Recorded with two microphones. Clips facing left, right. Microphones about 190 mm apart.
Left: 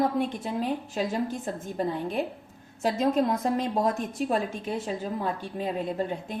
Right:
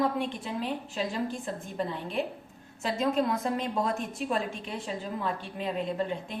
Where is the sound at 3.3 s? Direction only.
45° left (ahead or behind).